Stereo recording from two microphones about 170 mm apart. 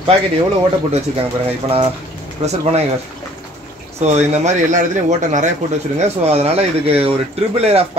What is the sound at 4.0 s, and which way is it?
Speech, 40° right (ahead or behind).